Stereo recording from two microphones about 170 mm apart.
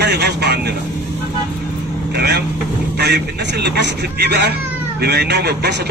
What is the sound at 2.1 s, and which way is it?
Speech, 70° right (ahead or behind).